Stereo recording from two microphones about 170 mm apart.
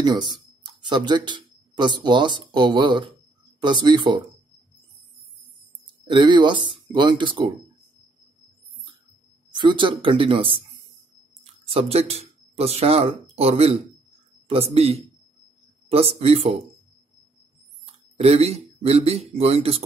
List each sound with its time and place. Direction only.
0.0 s speech: 25° right (ahead or behind)
6.0 s speech: 25° right (ahead or behind)
9.5 s speech: 25° right (ahead or behind)
11.7 s speech: 35° right (ahead or behind)
18.1 s speech: 40° right (ahead or behind)